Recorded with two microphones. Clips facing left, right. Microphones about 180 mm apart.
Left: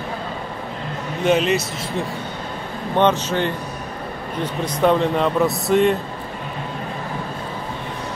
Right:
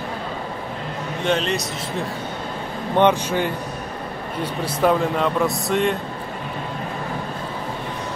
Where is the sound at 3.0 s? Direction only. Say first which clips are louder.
Even; 10° right (ahead or behind).